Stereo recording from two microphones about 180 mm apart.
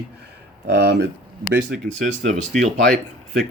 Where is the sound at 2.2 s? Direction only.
40° right (ahead or behind).